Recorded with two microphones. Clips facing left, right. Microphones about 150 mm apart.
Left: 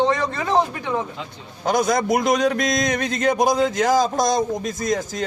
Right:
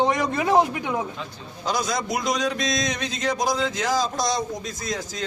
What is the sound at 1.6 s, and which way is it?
A man's voice, 55° left (ahead or behind).